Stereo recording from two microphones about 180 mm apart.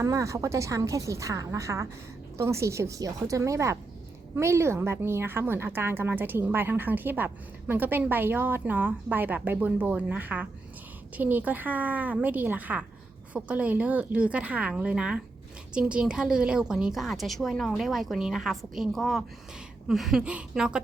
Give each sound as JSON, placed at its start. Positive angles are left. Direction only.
{"t": 0.0, "sound": "a woman's voice", "side_deg": -20}